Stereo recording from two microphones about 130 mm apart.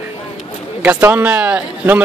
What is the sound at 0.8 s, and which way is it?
A man's voice, 15° right (ahead or behind).